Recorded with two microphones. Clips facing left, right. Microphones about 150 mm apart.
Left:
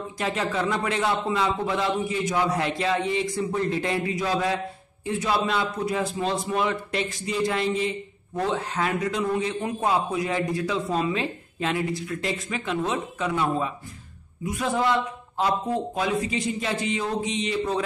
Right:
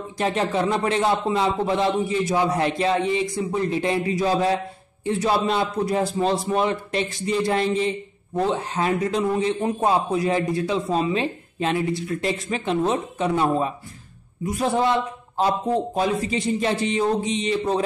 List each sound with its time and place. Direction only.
0.2 s speech: 30° right (ahead or behind)
4.1 s a man's voice: 30° right (ahead or behind)